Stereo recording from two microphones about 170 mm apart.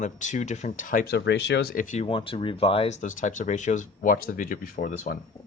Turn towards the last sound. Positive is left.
turn(degrees=55)  # may be behind; listen again after turning